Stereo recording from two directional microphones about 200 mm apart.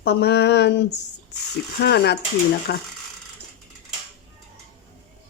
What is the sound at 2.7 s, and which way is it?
Speech, 50° left (ahead or behind).